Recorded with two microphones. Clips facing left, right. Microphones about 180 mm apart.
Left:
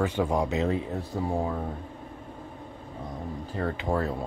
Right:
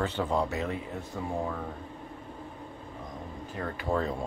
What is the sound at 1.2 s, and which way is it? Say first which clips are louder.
Speech: left 6 dB; 35° left (ahead or behind).